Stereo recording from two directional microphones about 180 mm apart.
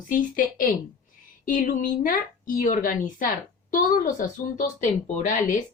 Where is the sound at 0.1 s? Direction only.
50° left (ahead or behind).